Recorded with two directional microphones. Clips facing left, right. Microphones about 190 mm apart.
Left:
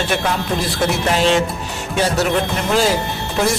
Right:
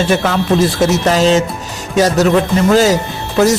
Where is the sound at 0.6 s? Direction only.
40° right (ahead or behind).